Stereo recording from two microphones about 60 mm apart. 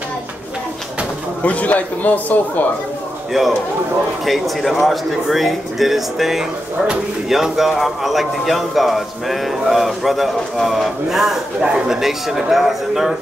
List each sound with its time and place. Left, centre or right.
1.4 s a man's voice: left
4.3 s speech: centre